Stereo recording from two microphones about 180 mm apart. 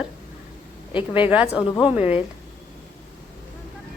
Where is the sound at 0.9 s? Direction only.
30° left (ahead or behind).